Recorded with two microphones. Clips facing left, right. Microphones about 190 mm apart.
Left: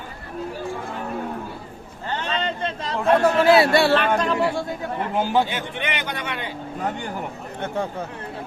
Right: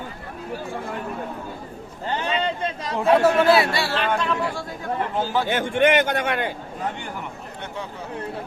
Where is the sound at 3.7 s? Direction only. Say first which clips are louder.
Left 7 dB; 55° left (ahead or behind).